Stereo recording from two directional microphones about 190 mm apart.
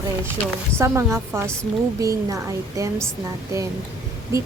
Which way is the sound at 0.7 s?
15° right (ahead or behind).